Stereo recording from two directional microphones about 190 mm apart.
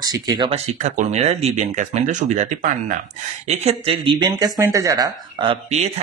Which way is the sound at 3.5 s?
30° right (ahead or behind).